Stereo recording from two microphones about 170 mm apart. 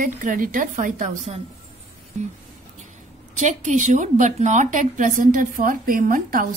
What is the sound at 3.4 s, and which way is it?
A woman's voice, 45° right (ahead or behind).